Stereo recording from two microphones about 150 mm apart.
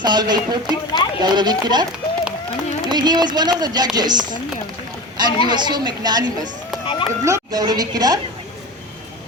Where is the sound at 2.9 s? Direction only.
30° right (ahead or behind).